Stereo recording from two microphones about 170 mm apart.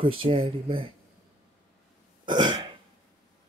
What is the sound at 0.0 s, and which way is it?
Speech, 30° right (ahead or behind).